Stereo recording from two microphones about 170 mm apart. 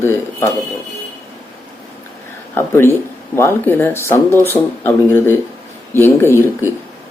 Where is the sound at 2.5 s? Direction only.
15° left (ahead or behind).